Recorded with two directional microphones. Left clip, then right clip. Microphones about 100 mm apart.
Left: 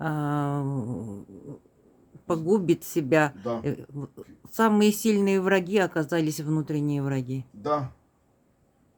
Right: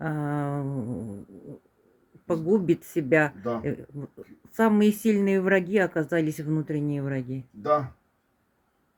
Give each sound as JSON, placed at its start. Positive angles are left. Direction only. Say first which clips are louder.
{"t": 0.0, "sound": "music", "louder": "left 2 dB", "side_deg": 20}
{"t": 2.2, "sound": "speech", "louder": "even", "side_deg": 15}